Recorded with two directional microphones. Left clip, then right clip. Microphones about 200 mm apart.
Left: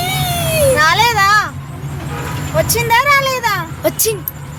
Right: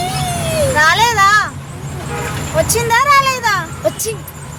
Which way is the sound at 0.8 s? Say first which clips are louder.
Right 4 dB; 5° left (ahead or behind).